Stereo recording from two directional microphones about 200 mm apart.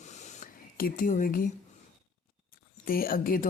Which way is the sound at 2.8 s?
45° left (ahead or behind).